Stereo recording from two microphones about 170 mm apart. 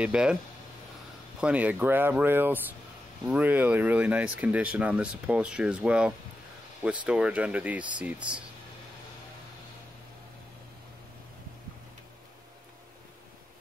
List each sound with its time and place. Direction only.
0.0 s speech: 5° right (ahead or behind)
1.4 s speech: 10° right (ahead or behind)